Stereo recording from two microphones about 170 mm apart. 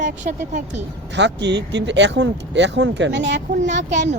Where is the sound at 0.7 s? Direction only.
90° right.